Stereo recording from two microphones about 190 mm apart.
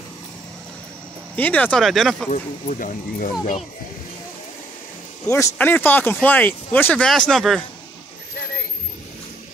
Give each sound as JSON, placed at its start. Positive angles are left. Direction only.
{"t": 1.3, "sound": "speech", "side_deg": 10}
{"t": 2.3, "sound": "speech", "side_deg": 40}
{"t": 5.3, "sound": "speech", "side_deg": 15}